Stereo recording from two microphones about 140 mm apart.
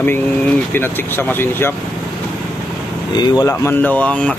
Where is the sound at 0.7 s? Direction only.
15° left (ahead or behind).